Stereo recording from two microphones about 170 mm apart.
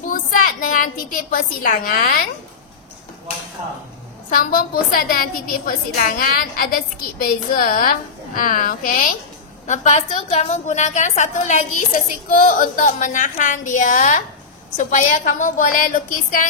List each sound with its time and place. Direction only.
0.1 s a woman's voice: 50° left (ahead or behind)
4.3 s a woman's voice: 55° left (ahead or behind)